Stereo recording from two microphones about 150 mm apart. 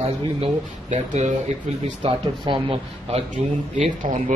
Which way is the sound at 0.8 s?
50° right (ahead or behind).